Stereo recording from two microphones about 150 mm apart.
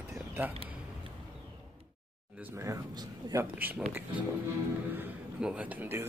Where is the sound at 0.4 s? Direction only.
15° right (ahead or behind).